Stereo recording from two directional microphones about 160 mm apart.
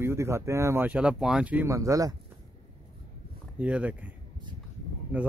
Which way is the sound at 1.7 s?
20° right (ahead or behind).